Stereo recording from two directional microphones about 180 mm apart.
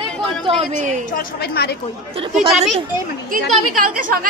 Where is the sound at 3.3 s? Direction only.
50° right (ahead or behind).